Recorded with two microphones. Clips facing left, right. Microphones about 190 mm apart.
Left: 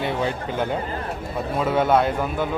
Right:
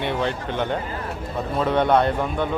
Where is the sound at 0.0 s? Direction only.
5° left (ahead or behind).